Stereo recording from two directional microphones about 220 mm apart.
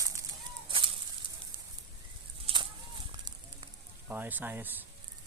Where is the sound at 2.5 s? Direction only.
25° right (ahead or behind).